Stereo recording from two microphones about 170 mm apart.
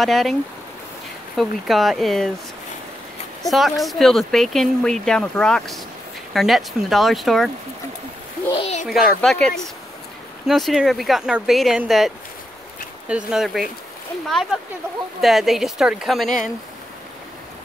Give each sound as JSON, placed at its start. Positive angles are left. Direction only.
{"t": 0.0, "sound": "speech", "side_deg": 0}
{"t": 3.4, "sound": "speech", "side_deg": 0}
{"t": 8.5, "sound": "a sound", "side_deg": 35}
{"t": 8.8, "sound": "speech", "side_deg": 0}
{"t": 13.1, "sound": "speech", "side_deg": -5}